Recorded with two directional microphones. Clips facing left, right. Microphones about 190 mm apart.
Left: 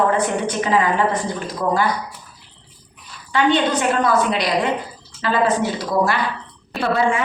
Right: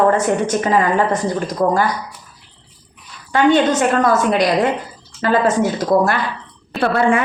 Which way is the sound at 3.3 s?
45° right (ahead or behind).